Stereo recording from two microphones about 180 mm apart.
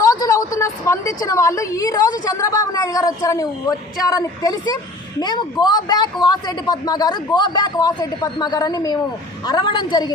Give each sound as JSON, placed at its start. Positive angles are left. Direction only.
{"t": 0.0, "sound": "a woman's voice", "side_deg": 20}